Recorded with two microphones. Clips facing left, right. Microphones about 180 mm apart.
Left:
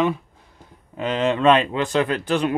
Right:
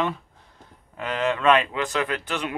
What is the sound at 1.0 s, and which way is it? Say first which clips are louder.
Speech: left 4 dB; 25° left (ahead or behind).